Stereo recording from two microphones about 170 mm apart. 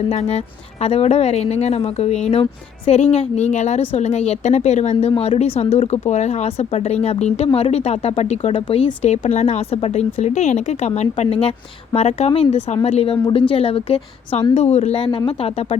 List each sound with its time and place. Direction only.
0.1 s speech: 40° left (ahead or behind)